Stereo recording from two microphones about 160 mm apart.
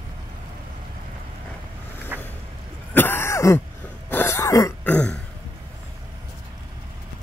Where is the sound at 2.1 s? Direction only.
10° right (ahead or behind).